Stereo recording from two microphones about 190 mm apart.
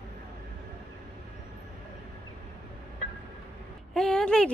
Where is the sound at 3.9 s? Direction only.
5° left (ahead or behind).